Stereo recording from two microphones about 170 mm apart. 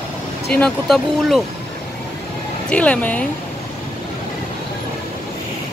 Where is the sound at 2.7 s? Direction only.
5° left (ahead or behind).